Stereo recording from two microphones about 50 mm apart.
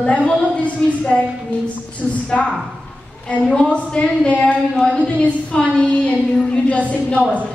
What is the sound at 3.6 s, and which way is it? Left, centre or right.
Speech, left.